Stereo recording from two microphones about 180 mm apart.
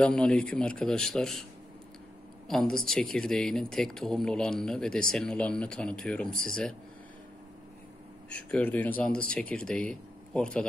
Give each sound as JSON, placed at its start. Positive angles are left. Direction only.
{"t": 0.0, "sound": "speech", "side_deg": 5}
{"t": 2.4, "sound": "speech", "side_deg": 5}
{"t": 8.3, "sound": "speech", "side_deg": 5}